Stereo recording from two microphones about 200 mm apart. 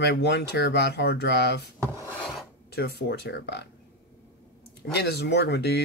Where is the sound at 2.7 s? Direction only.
55° left (ahead or behind).